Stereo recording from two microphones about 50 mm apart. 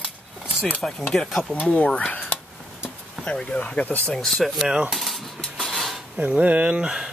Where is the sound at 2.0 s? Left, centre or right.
Left.